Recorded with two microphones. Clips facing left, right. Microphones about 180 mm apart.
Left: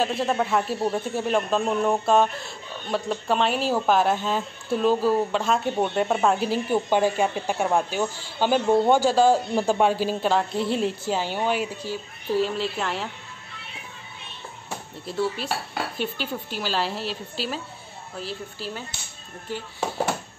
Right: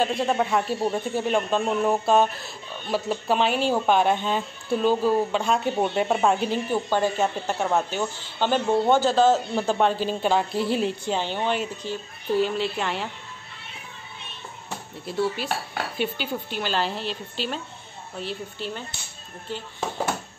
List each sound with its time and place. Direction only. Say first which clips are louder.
0.0 s speech: right 1 dB; centre (ahead or behind)
6.7 s speech: left 4 dB; 10° left (ahead or behind)
15.0 s speech: right 1 dB; centre (ahead or behind)